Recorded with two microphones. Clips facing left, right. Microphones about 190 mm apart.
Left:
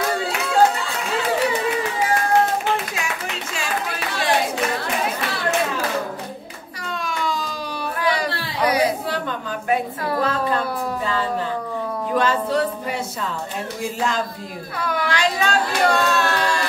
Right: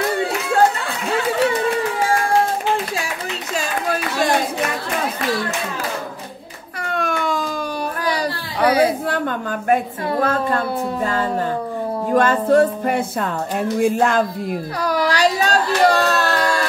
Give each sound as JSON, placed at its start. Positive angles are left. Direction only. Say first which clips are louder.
{"t": 6.8, "sound": "a sound", "louder": "right 5 dB", "side_deg": -55}
{"t": 8.0, "sound": "chatter", "louder": "left 3 dB", "side_deg": -30}
{"t": 10.2, "sound": "speech", "louder": "right 3 dB", "side_deg": -50}
{"t": 12.1, "sound": "speech", "louder": "right 6 dB", "side_deg": -50}
{"t": 14.8, "sound": "music", "louder": "right 4 dB", "side_deg": -40}